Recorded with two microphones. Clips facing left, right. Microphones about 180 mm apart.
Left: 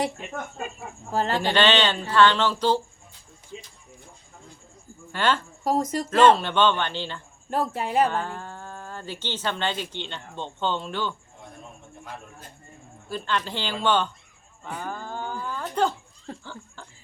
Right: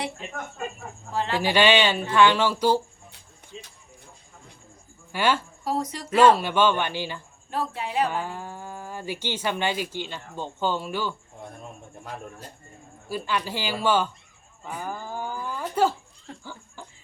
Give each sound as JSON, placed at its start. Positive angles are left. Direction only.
{"t": 1.1, "sound": "speech", "side_deg": 40}
{"t": 1.4, "sound": "speech", "side_deg": -10}
{"t": 5.1, "sound": "speech", "side_deg": -10}
{"t": 5.6, "sound": "speech", "side_deg": 45}
{"t": 6.1, "sound": "speech", "side_deg": -10}
{"t": 7.5, "sound": "speech", "side_deg": 45}
{"t": 8.1, "sound": "speech", "side_deg": -10}
{"t": 13.1, "sound": "speech", "side_deg": -10}
{"t": 16.4, "sound": "a sound", "side_deg": -10}